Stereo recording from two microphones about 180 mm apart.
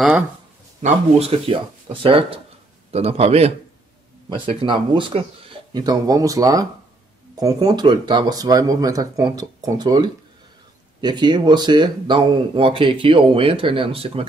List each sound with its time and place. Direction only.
0.8 s speech: 35° right (ahead or behind)